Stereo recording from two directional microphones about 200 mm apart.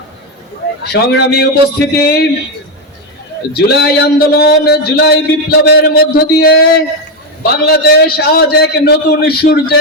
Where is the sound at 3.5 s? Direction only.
55° left (ahead or behind).